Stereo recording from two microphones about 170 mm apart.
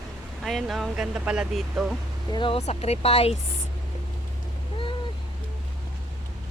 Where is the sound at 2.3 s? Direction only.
30° left (ahead or behind).